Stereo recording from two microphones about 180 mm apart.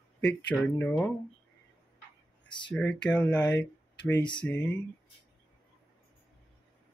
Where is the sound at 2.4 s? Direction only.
25° left (ahead or behind).